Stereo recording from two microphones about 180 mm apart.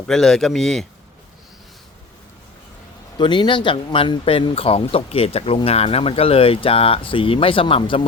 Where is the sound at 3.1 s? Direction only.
25° left (ahead or behind).